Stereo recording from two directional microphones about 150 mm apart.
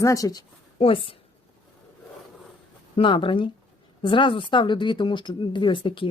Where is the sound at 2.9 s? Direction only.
35° left (ahead or behind).